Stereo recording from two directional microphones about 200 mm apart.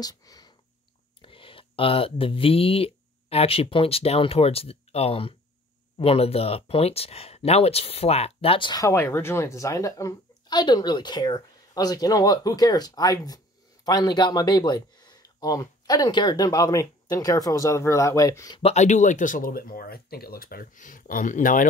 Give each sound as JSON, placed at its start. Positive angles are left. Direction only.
{"t": 0.0, "sound": "speech", "side_deg": 20}
{"t": 18.6, "sound": "speech", "side_deg": 35}